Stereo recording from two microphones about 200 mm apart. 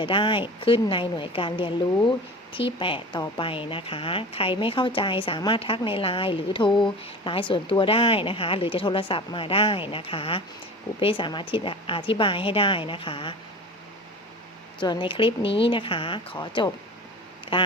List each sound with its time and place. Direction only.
0.0 s a woman's voice: 25° left (ahead or behind)
14.8 s a woman's voice: 25° left (ahead or behind)